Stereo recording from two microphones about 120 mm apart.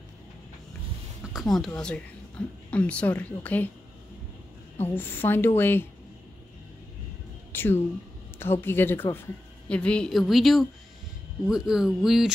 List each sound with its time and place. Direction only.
1.2 s a sound: centre (ahead or behind)
1.8 s speech: 10° left (ahead or behind)
4.8 s speech: 15° left (ahead or behind)
7.5 s speech: 20° left (ahead or behind); by 12.3 s 5° right (ahead or behind)